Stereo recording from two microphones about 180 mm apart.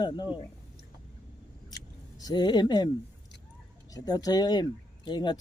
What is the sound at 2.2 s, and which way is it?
Speech, 25° left (ahead or behind).